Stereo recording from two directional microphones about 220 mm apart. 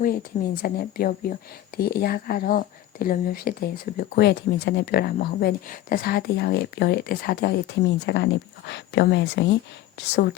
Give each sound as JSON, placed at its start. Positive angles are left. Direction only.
{"t": 0.0, "sound": "speech", "side_deg": 40}